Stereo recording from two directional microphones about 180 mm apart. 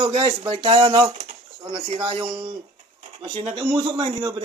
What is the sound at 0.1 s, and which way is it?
A man's voice, 35° right (ahead or behind).